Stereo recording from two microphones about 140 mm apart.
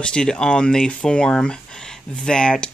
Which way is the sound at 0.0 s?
5° left (ahead or behind).